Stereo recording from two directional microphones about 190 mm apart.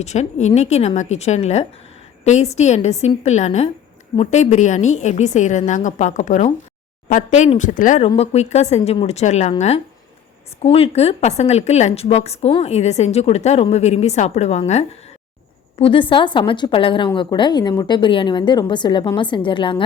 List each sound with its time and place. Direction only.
0.0 s a woman's voice: 35° left (ahead or behind)